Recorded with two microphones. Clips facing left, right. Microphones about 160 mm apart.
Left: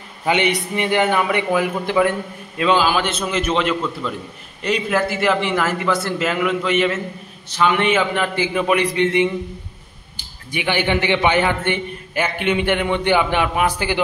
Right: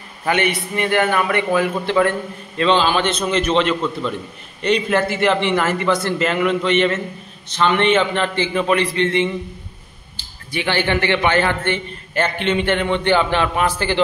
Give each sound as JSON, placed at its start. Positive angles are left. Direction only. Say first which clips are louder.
{"t": 0.2, "sound": "a man's voice", "louder": "left 1 dB", "side_deg": 15}